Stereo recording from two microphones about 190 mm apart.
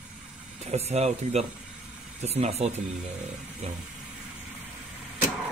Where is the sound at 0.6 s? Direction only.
35° right (ahead or behind).